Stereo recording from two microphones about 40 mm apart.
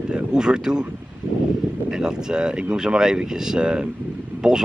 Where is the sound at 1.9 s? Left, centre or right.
Centre.